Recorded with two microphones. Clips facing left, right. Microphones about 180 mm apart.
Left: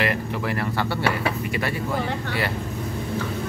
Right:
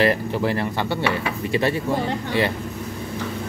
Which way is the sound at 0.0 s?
30° right (ahead or behind).